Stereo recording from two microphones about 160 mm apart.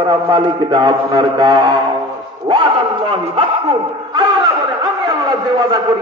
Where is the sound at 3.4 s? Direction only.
30° right (ahead or behind).